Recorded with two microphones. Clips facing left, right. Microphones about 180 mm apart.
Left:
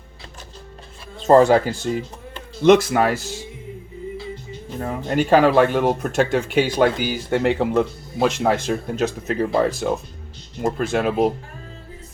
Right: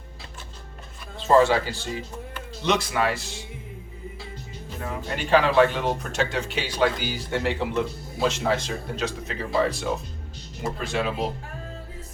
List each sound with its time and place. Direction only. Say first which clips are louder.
1.3 s speech: left 6 dB; 50° left (ahead or behind)
4.8 s speech: left 9 dB; 45° left (ahead or behind)
10.6 s speech: left 7 dB; 50° left (ahead or behind)